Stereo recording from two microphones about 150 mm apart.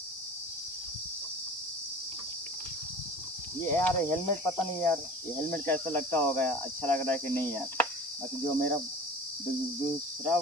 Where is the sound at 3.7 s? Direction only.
15° left (ahead or behind).